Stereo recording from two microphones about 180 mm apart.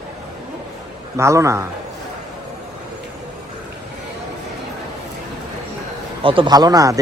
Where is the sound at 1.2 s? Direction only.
15° right (ahead or behind).